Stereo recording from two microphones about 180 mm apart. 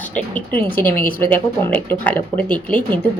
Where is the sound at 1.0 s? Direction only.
50° left (ahead or behind).